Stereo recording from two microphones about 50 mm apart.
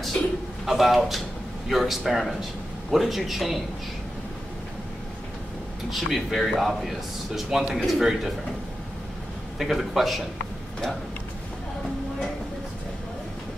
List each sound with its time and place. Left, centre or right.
0.7 s speech: centre
5.9 s speech: centre
9.6 s speech: centre